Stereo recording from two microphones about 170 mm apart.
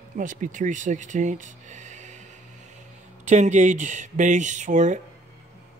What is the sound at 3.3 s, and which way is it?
Speech, 45° right (ahead or behind).